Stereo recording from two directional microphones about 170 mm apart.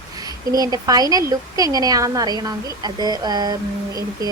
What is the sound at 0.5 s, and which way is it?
A woman's voice, 20° right (ahead or behind).